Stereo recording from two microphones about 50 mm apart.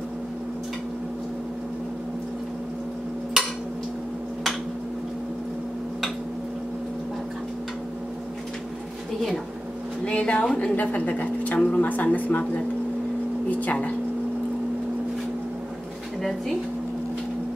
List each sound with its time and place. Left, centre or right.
10.0 s a woman's voice: left
13.6 s speech: left
16.2 s speech: centre